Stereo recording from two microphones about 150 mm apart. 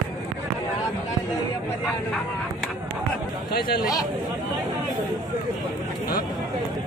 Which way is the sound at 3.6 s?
80° left.